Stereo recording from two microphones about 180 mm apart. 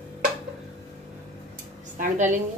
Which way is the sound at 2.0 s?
45° right (ahead or behind).